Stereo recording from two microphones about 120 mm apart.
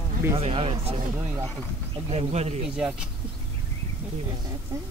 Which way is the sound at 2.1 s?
60° right (ahead or behind).